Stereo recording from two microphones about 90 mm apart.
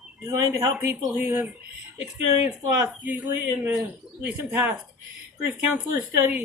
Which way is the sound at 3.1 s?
20° right (ahead or behind).